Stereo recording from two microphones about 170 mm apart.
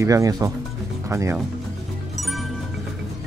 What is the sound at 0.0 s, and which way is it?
Speech, 20° right (ahead or behind).